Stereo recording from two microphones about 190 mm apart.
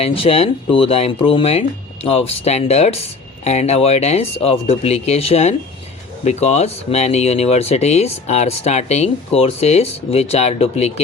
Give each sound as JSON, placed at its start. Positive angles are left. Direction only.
{"t": 0.0, "sound": "speech", "side_deg": 30}